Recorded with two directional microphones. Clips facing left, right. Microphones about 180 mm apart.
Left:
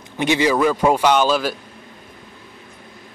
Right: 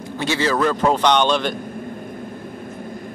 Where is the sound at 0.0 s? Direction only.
15° left (ahead or behind).